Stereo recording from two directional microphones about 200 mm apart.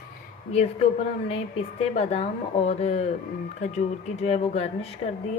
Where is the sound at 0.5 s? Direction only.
30° left (ahead or behind).